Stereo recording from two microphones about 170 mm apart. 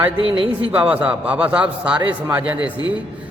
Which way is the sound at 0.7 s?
10° right (ahead or behind).